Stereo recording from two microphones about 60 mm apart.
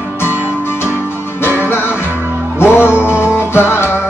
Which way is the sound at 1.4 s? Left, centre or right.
Left.